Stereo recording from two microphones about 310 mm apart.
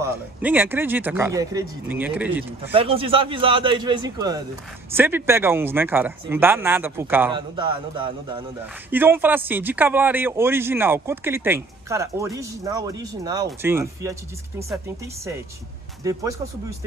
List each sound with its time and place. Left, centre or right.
0.0 s speech: centre
2.7 s speech: centre
16.0 s speech: centre